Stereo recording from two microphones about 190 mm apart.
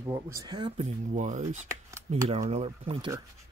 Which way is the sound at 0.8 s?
40° right (ahead or behind).